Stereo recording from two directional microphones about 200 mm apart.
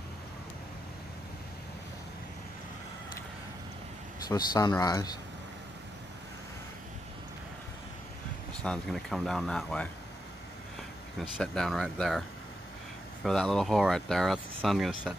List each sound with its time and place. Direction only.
4.3 s speech: 20° left (ahead or behind)
8.6 s speech: centre (ahead or behind)
11.1 s speech: centre (ahead or behind)